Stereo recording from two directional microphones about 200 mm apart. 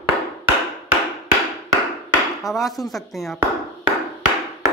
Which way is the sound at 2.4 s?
Centre (ahead or behind).